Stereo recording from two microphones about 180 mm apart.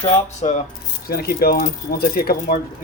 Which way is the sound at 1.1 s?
60° left (ahead or behind).